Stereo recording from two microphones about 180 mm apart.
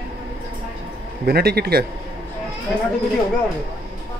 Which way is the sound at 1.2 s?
60° right (ahead or behind).